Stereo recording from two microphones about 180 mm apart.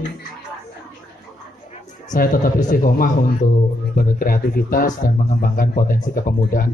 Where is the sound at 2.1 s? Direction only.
50° left (ahead or behind).